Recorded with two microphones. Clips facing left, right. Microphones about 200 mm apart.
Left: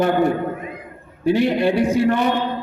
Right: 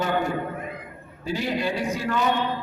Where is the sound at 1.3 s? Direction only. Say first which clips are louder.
Left 9 dB; 65° left (ahead or behind).